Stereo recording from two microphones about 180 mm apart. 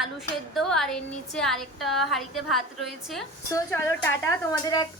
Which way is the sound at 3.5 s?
15° left (ahead or behind).